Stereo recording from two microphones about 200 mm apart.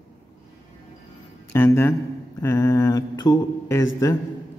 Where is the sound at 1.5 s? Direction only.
15° left (ahead or behind).